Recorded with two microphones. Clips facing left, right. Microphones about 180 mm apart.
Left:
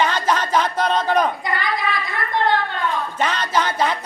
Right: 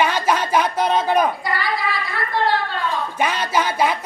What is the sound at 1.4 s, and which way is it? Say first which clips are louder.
Child singing: even; 20° left (ahead or behind).